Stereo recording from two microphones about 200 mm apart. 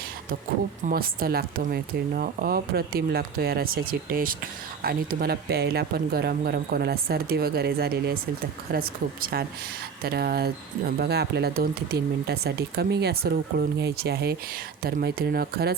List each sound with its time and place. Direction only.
0.9 s speech: 45° right (ahead or behind)